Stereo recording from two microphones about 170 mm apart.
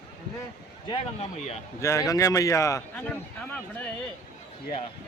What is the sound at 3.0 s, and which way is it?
Speech, 10° left (ahead or behind).